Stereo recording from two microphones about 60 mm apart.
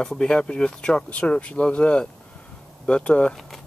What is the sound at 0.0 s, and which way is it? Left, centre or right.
Speech, centre.